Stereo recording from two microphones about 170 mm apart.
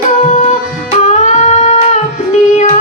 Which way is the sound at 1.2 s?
45° left (ahead or behind).